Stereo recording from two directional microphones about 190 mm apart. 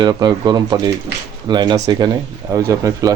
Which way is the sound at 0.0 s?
20° right (ahead or behind).